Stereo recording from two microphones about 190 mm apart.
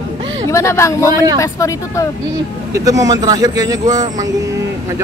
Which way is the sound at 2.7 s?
20° right (ahead or behind).